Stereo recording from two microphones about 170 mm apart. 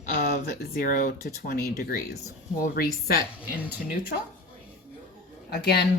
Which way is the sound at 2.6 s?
60° left (ahead or behind).